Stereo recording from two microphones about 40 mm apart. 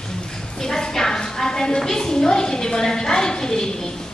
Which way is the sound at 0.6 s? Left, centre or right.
Centre.